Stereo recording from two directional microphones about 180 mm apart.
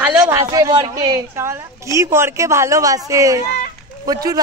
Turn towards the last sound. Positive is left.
turn(degrees=-20)  # may be behind; listen again after turning